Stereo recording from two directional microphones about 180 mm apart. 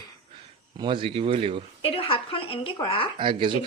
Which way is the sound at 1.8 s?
30° left (ahead or behind).